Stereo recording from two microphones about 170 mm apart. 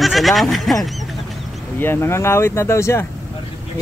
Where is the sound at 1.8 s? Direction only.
15° left (ahead or behind).